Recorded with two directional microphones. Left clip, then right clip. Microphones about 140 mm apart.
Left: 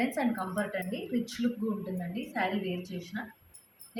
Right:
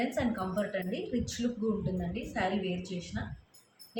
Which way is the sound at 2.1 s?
15° right (ahead or behind).